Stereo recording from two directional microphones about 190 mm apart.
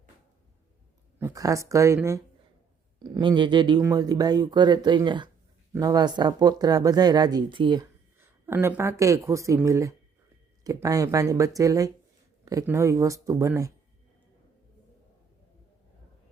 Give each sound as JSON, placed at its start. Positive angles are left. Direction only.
{"t": 1.2, "sound": "speech", "side_deg": -20}
{"t": 8.4, "sound": "speech", "side_deg": -10}